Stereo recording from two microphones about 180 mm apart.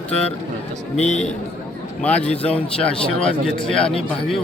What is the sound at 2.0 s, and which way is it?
Speech, 5° left (ahead or behind).